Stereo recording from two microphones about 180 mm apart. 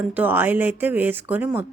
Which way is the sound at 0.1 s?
10° right (ahead or behind).